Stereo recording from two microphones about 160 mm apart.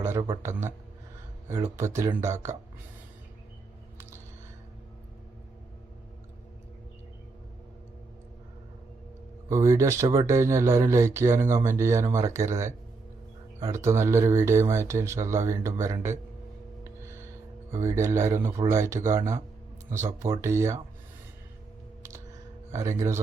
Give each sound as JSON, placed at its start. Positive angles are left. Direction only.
{"t": 0.0, "sound": "a sound", "side_deg": -15}
{"t": 0.4, "sound": "speech", "side_deg": -15}
{"t": 9.5, "sound": "speech", "side_deg": -15}
{"t": 17.0, "sound": "gasp", "side_deg": -15}
{"t": 17.7, "sound": "speech", "side_deg": -15}
{"t": 20.4, "sound": "speech", "side_deg": -15}
{"t": 22.8, "sound": "speech", "side_deg": -20}